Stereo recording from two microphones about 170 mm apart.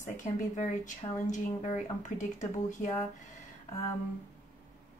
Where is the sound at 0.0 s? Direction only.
50° left (ahead or behind).